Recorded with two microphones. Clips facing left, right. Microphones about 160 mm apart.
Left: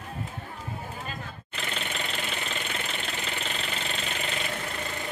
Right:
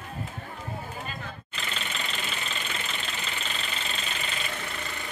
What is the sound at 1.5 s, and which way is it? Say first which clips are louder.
Engine: left 3 dB; 55° left (ahead or behind).